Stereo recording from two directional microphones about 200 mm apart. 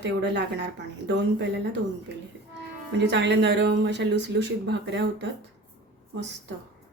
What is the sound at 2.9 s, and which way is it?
Speech, 60° right (ahead or behind).